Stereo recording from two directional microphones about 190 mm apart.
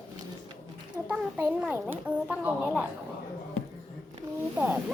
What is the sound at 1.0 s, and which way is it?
A child's voice, 5° right (ahead or behind).